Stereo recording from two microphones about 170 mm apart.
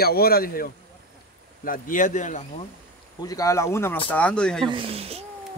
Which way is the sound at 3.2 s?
20° left (ahead or behind).